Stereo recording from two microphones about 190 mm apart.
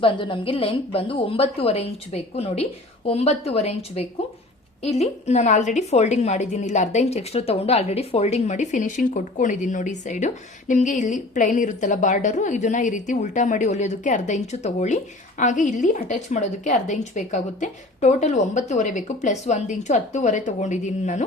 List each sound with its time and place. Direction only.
0.0 s a woman's voice: 25° left (ahead or behind)